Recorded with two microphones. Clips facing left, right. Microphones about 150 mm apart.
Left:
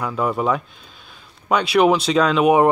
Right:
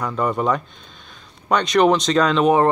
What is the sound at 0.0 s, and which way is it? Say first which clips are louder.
Speech: even; 5° left (ahead or behind).